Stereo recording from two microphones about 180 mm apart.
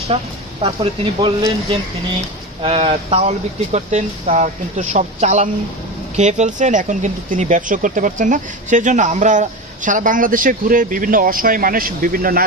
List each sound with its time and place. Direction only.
0.1 s speech: 30° right (ahead or behind); by 12.4 s 55° right (ahead or behind)